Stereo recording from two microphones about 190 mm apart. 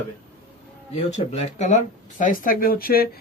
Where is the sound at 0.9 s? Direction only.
35° left (ahead or behind).